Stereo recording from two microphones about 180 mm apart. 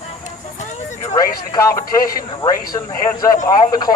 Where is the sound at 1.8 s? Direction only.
55° left (ahead or behind).